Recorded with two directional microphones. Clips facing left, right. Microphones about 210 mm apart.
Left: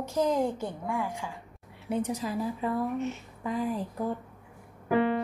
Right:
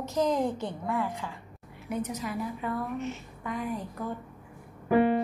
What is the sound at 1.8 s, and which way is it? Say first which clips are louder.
A woman's voice: left 3 dB; 30° left (ahead or behind).